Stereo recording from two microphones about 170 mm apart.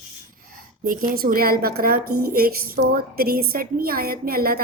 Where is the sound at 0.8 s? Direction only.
50° right (ahead or behind).